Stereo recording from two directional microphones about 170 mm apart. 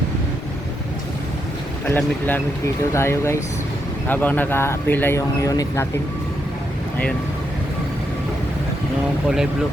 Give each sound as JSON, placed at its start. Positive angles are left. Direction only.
{"t": 1.9, "sound": "speech", "side_deg": 10}